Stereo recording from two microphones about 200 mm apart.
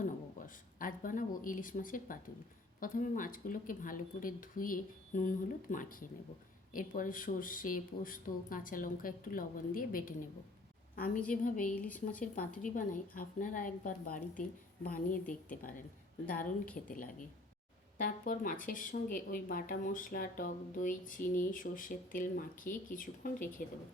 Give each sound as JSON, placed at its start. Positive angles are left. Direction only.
{"t": 0.0, "sound": "a sound", "side_deg": 40}
{"t": 2.8, "sound": "a woman's voice", "side_deg": 40}
{"t": 11.7, "sound": "speech", "side_deg": 10}
{"t": 12.6, "sound": "a woman's voice", "side_deg": 40}
{"t": 17.9, "sound": "speech", "side_deg": 40}